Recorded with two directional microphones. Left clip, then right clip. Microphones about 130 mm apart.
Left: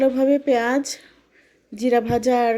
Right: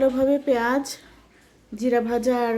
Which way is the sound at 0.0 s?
30° left (ahead or behind).